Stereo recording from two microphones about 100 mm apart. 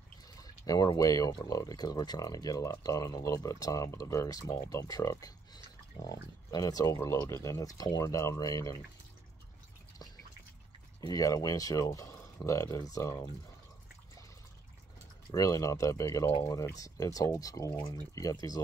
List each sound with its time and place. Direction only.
0.4 s speech: 40° left (ahead or behind)
11.0 s speech: 35° left (ahead or behind)
15.3 s speech: 35° left (ahead or behind)